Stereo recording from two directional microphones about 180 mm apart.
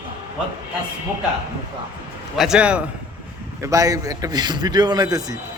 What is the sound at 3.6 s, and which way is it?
A man's voice, 20° right (ahead or behind).